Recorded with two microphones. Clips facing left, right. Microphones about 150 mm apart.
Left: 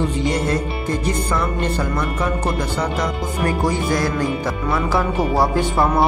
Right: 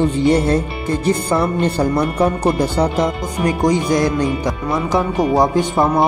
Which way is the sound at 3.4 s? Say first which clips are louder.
Right 5 dB; 20° right (ahead or behind).